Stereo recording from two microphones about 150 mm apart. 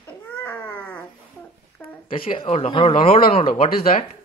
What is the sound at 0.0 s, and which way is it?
Baby cry, 10° left (ahead or behind).